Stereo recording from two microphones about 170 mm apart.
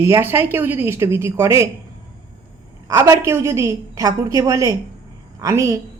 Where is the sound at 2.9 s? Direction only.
20° right (ahead or behind).